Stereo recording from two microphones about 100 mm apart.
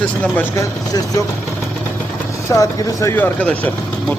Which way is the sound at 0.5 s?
35° left (ahead or behind).